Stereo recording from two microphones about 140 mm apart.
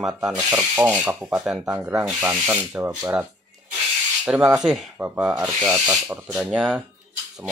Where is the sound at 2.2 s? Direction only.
15° right (ahead or behind).